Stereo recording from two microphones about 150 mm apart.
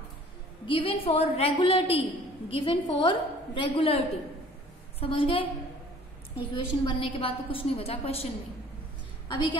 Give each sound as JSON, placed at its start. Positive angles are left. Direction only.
{"t": 0.7, "sound": "a woman's voice", "side_deg": 35}
{"t": 5.0, "sound": "a woman's voice", "side_deg": 35}
{"t": 9.3, "sound": "a woman's voice", "side_deg": 30}